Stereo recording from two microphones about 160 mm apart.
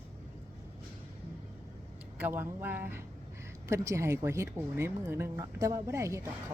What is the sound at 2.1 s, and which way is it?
Speech, 10° right (ahead or behind).